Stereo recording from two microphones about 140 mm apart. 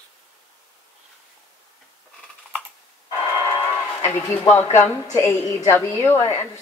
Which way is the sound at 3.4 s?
15° left (ahead or behind).